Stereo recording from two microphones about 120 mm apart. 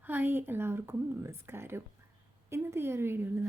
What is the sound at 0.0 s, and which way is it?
A woman's voice, 15° right (ahead or behind).